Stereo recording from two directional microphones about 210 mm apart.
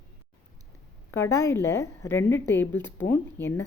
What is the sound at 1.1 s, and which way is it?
A woman's voice, 10° left (ahead or behind).